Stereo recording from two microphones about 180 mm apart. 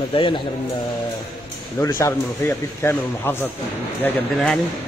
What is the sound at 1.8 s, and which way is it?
A man's voice, 15° left (ahead or behind).